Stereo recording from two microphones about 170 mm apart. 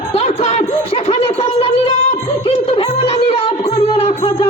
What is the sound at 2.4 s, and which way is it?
Music, 35° left (ahead or behind).